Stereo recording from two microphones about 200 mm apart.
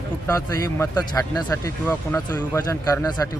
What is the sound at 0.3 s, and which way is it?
A man's voice, 15° left (ahead or behind).